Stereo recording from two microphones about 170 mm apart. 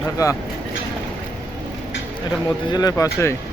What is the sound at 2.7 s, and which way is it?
Speech, 20° left (ahead or behind).